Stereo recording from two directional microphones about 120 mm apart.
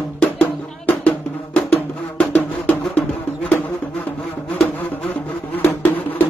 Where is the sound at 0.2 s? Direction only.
10° left (ahead or behind).